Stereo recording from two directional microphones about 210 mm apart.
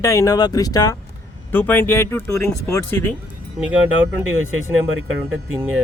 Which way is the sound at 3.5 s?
5° right (ahead or behind).